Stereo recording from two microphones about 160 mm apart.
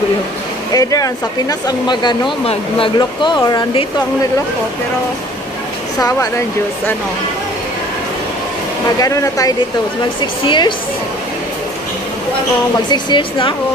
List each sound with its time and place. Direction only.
0.7 s speech: 20° left (ahead or behind)
5.9 s speech: 20° left (ahead or behind)
9.0 s speech: 20° left (ahead or behind)
12.9 s speech: 30° left (ahead or behind)